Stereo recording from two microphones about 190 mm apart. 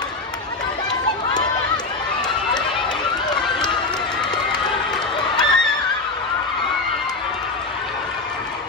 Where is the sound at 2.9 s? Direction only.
5° left (ahead or behind).